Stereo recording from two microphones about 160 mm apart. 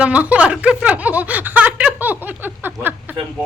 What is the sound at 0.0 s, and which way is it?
Speech, 10° right (ahead or behind).